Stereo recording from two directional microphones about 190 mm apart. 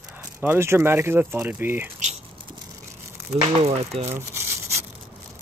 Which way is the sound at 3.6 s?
35° right (ahead or behind).